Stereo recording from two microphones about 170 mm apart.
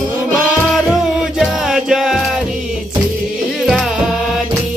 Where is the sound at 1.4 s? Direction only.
5° right (ahead or behind).